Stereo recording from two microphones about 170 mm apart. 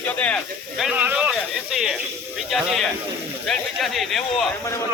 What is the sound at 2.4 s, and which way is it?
Speech, centre (ahead or behind).